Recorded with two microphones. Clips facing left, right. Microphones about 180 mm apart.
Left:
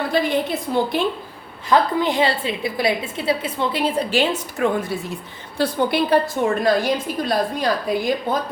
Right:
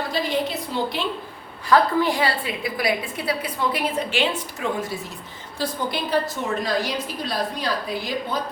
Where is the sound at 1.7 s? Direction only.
20° left (ahead or behind); by 4.2 s 35° left (ahead or behind).